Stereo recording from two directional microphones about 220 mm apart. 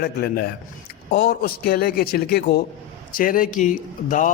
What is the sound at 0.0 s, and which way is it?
A man's voice, 45° left (ahead or behind).